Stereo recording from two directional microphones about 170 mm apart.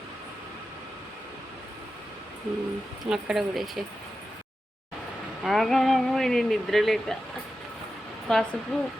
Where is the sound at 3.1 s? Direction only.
Centre (ahead or behind).